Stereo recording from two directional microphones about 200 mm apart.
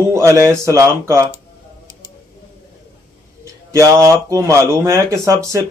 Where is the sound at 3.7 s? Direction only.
15° right (ahead or behind).